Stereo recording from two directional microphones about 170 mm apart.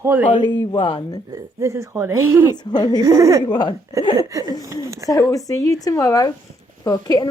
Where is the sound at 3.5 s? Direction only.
25° left (ahead or behind).